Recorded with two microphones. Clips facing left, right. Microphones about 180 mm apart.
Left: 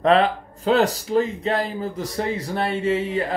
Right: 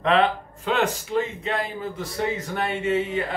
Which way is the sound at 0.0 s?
35° left (ahead or behind).